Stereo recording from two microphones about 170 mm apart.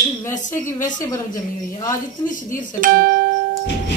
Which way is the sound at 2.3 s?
50° left (ahead or behind).